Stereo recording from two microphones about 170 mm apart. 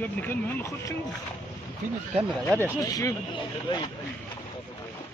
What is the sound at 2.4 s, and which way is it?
Speech, 10° left (ahead or behind).